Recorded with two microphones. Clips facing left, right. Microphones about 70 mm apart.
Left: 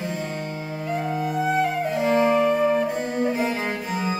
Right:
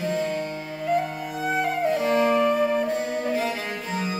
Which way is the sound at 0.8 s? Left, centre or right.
Centre.